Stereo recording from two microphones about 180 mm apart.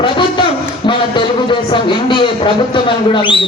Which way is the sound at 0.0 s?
25° left (ahead or behind).